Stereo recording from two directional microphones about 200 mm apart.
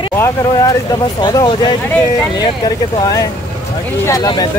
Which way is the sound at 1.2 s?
20° left (ahead or behind).